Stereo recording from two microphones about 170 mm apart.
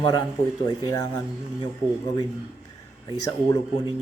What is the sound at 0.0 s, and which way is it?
A man's voice, 25° left (ahead or behind).